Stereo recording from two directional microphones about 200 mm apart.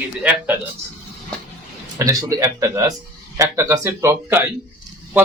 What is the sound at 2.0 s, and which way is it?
Speech, 15° right (ahead or behind).